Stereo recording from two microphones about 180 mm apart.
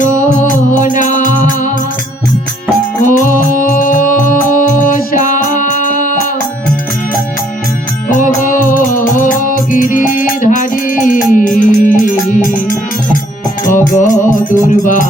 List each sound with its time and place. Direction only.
0.2 s music: 45° left (ahead or behind)
3.0 s music: 45° left (ahead or behind)
8.1 s music: 45° left (ahead or behind)